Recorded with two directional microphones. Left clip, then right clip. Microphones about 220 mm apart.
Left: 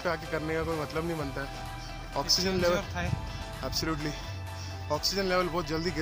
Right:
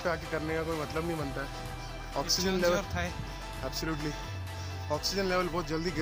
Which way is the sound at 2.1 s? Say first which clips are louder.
Left 3 dB; 5° left (ahead or behind).